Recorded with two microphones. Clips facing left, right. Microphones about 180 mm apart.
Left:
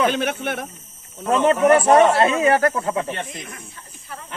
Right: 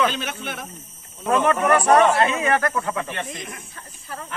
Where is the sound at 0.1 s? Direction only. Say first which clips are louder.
Left 7 dB; 55° left (ahead or behind).